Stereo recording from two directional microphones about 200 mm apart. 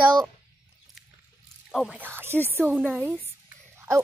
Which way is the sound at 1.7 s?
Centre (ahead or behind).